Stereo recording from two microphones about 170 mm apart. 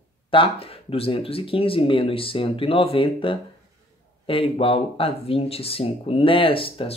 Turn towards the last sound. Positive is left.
turn(degrees=30)  # may be behind; listen again after turning